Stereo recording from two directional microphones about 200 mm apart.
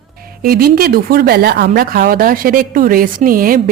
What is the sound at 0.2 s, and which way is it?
Speech, 50° right (ahead or behind).